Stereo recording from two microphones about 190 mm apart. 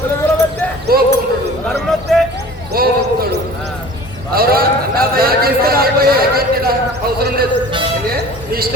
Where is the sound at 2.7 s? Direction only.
55° right (ahead or behind).